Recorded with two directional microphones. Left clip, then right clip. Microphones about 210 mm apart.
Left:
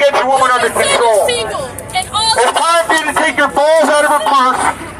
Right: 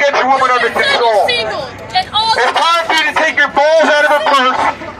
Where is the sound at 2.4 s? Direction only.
15° right (ahead or behind).